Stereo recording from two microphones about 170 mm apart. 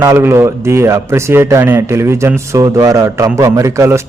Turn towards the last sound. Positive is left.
turn(degrees=-15)  # may be behind; listen again after turning